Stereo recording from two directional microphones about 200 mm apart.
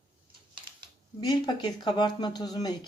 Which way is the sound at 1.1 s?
20° left (ahead or behind).